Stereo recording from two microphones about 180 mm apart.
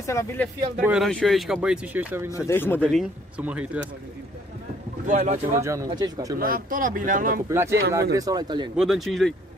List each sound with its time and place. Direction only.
0.0 s speech: 15° left (ahead or behind)
0.8 s speech: centre (ahead or behind)
2.3 s speech: 15° left (ahead or behind); by 3.9 s 10° right (ahead or behind)
5.0 s speech: 45° right (ahead or behind)
5.9 s speech: 20° right (ahead or behind)
6.4 s speech: 50° right (ahead or behind)
7.4 s speech: 15° right (ahead or behind)
8.7 s speech: centre (ahead or behind)